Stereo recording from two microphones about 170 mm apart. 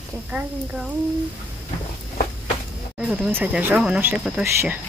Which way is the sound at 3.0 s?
5° right (ahead or behind).